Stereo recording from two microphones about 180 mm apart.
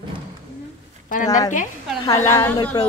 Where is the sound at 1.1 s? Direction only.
40° left (ahead or behind).